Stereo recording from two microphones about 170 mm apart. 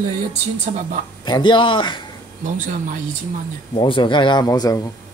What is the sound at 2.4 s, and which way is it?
Speech, 50° right (ahead or behind).